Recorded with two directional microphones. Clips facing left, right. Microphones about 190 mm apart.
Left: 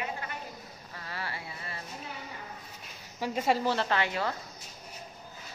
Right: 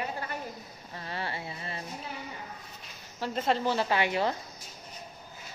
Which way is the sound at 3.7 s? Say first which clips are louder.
Right 2 dB; 10° right (ahead or behind).